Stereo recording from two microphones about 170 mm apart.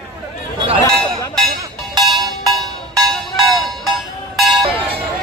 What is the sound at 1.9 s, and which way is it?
Music, 25° right (ahead or behind).